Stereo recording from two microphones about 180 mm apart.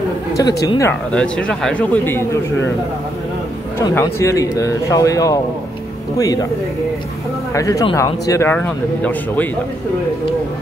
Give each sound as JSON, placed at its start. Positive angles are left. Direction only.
{"t": 0.3, "sound": "speech", "side_deg": 20}
{"t": 1.1, "sound": "a man's voice", "side_deg": 5}
{"t": 3.7, "sound": "speech", "side_deg": 15}
{"t": 7.5, "sound": "speech", "side_deg": 20}